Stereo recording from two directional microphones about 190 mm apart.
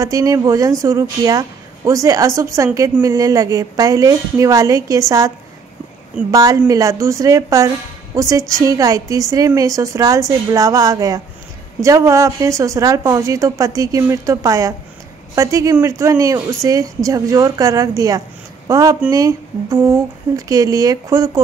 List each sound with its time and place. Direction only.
0.0 s a woman's voice: 15° right (ahead or behind)
6.3 s a woman's voice: 20° right (ahead or behind)